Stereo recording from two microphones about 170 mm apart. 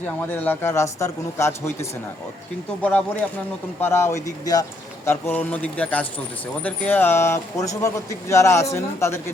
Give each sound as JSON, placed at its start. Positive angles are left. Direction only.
{"t": 0.2, "sound": "a man's voice", "side_deg": 10}